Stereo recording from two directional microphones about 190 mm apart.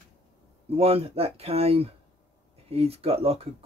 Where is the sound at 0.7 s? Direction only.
30° right (ahead or behind).